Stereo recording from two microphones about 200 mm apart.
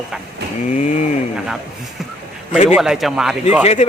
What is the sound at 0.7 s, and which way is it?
Mechanisms, 35° left (ahead or behind).